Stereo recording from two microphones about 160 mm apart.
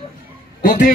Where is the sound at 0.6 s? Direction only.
60° left (ahead or behind).